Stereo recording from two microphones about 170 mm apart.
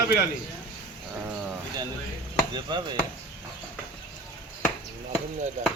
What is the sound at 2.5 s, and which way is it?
Chopping, 25° right (ahead or behind).